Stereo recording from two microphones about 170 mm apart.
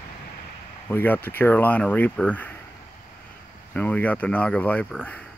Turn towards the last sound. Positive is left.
turn(degrees=10)  # may be behind; listen again after turning